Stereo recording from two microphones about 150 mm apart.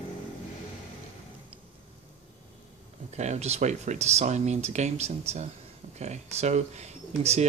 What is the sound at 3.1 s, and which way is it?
Speech, 50° right (ahead or behind).